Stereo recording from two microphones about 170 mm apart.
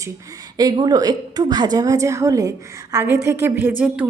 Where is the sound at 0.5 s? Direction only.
20° right (ahead or behind).